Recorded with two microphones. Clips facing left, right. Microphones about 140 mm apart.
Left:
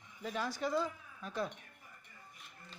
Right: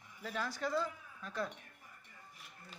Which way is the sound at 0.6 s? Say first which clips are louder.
Left 1 dB; 15° left (ahead or behind).